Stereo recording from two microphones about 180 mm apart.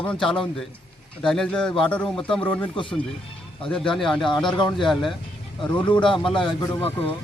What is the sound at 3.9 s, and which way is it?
Speech, centre (ahead or behind).